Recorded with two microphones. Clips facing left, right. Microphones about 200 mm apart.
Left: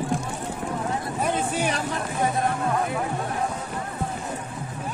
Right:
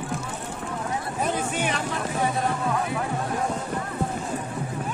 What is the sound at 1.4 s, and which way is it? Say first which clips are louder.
Speech: left 1 dB; 35° left (ahead or behind).